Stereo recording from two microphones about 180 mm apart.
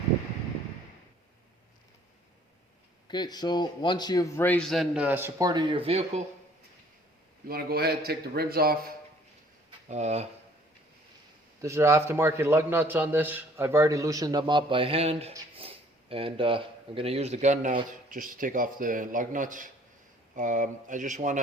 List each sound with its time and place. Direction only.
3.1 s a man's voice: 25° left (ahead or behind); by 6.2 s 35° right (ahead or behind)
7.4 s a man's voice: 60° right (ahead or behind)
9.9 s speech: 40° right (ahead or behind)
11.6 s a man's voice: 15° right (ahead or behind); by 21.3 s 45° right (ahead or behind)